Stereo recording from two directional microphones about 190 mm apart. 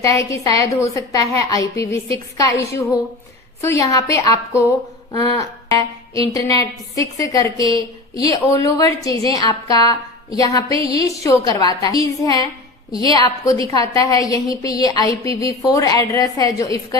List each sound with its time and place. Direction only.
0.0 s music: 15° left (ahead or behind)
8.3 s a woman's voice: 20° left (ahead or behind)